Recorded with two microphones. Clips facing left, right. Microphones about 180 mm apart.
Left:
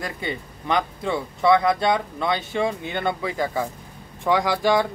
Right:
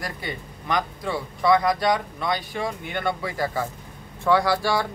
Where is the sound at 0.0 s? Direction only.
25° left (ahead or behind).